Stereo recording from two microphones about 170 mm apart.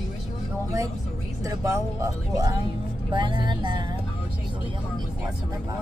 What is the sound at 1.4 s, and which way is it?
Speech, 20° right (ahead or behind).